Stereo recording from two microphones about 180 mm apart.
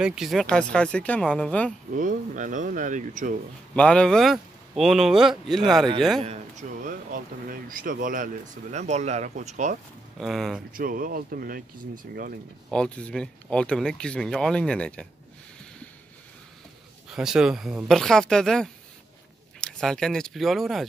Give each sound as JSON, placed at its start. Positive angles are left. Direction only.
{"t": 0.0, "sound": "speech", "side_deg": -5}
{"t": 2.0, "sound": "speech", "side_deg": -45}
{"t": 3.7, "sound": "speech", "side_deg": 5}
{"t": 6.2, "sound": "speech", "side_deg": -40}
{"t": 10.1, "sound": "speech", "side_deg": 0}
{"t": 10.7, "sound": "speech", "side_deg": -50}
{"t": 12.7, "sound": "speech", "side_deg": 5}
{"t": 17.1, "sound": "speech", "side_deg": -5}